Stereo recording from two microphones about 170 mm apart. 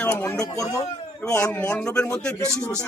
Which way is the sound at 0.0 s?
15° left (ahead or behind).